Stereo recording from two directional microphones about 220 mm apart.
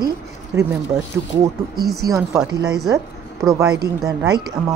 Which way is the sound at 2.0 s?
15° right (ahead or behind).